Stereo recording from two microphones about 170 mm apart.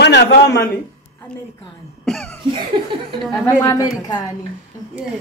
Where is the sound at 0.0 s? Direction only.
85° left.